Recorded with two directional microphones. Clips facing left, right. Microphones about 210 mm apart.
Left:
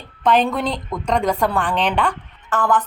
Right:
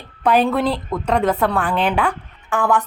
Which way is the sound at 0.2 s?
10° right (ahead or behind).